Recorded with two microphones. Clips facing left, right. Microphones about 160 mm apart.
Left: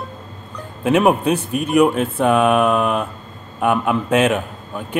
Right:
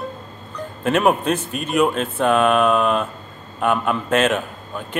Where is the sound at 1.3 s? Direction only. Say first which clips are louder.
Left 5 dB; 65° left (ahead or behind).